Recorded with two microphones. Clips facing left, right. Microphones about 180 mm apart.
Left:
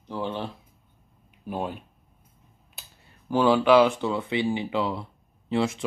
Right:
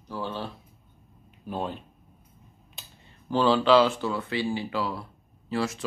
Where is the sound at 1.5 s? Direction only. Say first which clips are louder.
Left 1 dB; 10° left (ahead or behind).